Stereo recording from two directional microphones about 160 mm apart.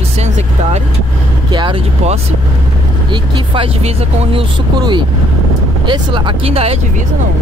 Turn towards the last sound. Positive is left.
turn(degrees=-40)  # may be behind; listen again after turning